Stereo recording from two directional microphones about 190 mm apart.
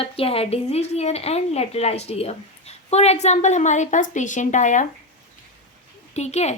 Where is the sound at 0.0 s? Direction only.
30° left (ahead or behind).